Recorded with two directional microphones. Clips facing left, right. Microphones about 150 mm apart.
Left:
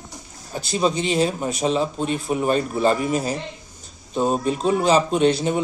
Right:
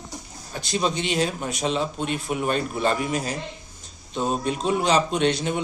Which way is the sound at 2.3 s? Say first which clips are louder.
Left 5 dB; 35° left (ahead or behind).